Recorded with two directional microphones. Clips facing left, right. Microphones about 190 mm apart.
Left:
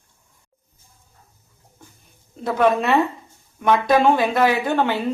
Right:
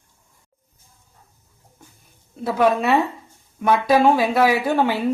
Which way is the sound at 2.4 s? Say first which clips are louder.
Even; 5° right (ahead or behind).